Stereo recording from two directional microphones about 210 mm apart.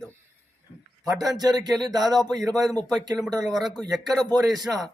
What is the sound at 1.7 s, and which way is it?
Speech, centre (ahead or behind).